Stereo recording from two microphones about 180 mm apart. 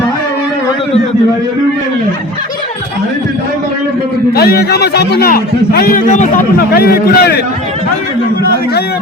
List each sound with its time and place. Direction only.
4.4 s a man's voice: 60° left (ahead or behind)